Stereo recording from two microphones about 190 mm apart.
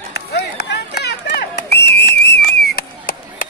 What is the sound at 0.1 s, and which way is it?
Whistle, 60° left (ahead or behind).